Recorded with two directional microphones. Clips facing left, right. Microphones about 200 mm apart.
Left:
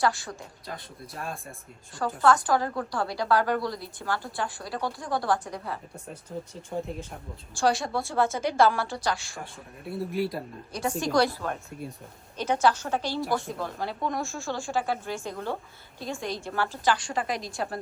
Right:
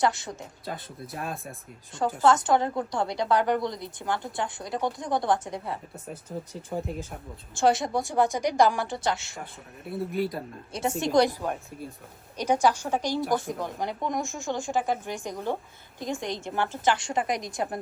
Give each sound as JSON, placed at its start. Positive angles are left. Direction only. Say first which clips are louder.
{"t": 0.0, "sound": "a woman's voice", "louder": "right 1 dB", "side_deg": -20}
{"t": 1.1, "sound": "speech", "louder": "right 2 dB", "side_deg": 0}
{"t": 2.2, "sound": "a woman's voice", "louder": "right 1 dB", "side_deg": -20}
{"t": 6.5, "sound": "speech", "louder": "right 1 dB", "side_deg": 0}
{"t": 7.5, "sound": "speech", "louder": "right 2 dB", "side_deg": -20}
{"t": 9.9, "sound": "speech", "louder": "even", "side_deg": 0}
{"t": 10.7, "sound": "a woman's voice", "louder": "right 1 dB", "side_deg": -25}